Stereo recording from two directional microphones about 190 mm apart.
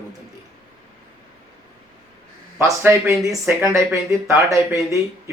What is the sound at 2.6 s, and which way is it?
Speech, 15° right (ahead or behind).